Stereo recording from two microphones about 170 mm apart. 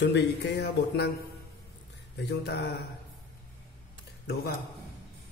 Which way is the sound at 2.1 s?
75° left (ahead or behind).